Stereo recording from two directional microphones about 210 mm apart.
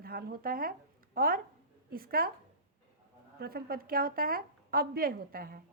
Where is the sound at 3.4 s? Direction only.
45° right (ahead or behind).